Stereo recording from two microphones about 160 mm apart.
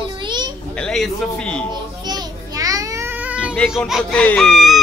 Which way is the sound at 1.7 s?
25° right (ahead or behind).